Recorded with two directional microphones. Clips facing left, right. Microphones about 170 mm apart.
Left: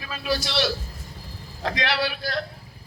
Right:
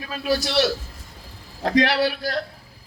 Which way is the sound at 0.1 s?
40° right (ahead or behind).